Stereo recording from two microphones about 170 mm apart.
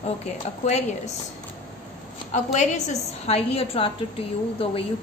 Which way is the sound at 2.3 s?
45° left (ahead or behind).